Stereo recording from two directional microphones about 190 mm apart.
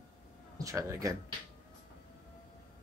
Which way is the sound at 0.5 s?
15° right (ahead or behind).